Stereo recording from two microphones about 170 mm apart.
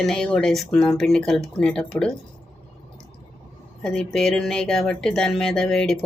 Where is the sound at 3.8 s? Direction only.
5° left (ahead or behind).